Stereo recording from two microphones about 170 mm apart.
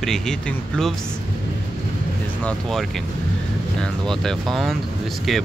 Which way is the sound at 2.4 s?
Centre (ahead or behind).